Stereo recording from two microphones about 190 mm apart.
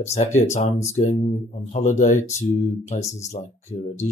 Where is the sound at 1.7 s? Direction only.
40° left (ahead or behind).